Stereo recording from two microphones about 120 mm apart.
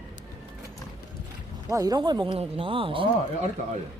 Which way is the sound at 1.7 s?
30° right (ahead or behind).